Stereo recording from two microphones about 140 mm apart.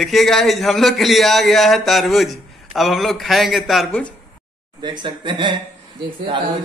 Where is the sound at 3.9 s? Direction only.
10° left (ahead or behind).